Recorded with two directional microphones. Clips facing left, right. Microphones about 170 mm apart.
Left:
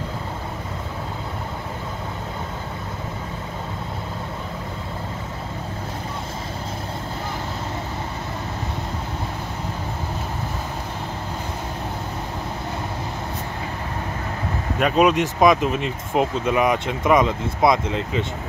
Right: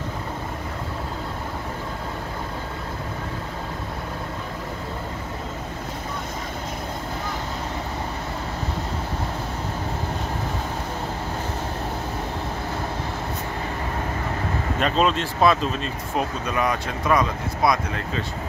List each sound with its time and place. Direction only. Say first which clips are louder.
14.8 s speech: left 5 dB; 10° left (ahead or behind)